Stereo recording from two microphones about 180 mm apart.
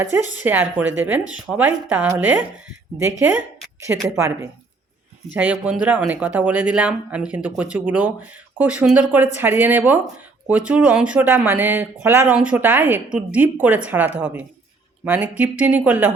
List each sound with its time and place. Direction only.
0.0 s speech: 10° right (ahead or behind)